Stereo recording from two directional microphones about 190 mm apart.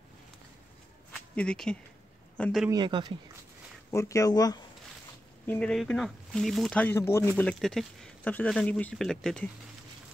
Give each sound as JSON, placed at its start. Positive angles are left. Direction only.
{"t": 1.3, "sound": "a man's voice", "side_deg": 5}
{"t": 2.7, "sound": "speech", "side_deg": -25}
{"t": 3.9, "sound": "speech", "side_deg": 15}
{"t": 5.5, "sound": "speech", "side_deg": 5}
{"t": 7.3, "sound": "speech", "side_deg": 5}